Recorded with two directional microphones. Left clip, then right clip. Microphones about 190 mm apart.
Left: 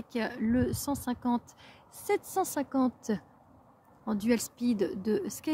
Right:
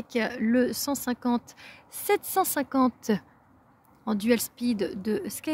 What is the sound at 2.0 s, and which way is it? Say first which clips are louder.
A woman's voice: right 5 dB; 45° right (ahead or behind).